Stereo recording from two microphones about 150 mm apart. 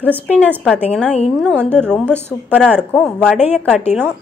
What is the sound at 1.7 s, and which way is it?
A woman's voice, 5° left (ahead or behind).